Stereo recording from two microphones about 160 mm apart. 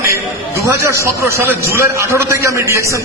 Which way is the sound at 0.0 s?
20° right (ahead or behind).